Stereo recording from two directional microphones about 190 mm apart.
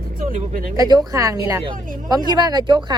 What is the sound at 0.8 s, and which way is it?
A woman's voice, 20° right (ahead or behind).